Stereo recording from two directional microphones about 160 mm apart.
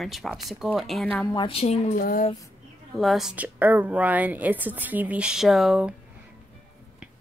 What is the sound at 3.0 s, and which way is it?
A woman's voice, centre (ahead or behind).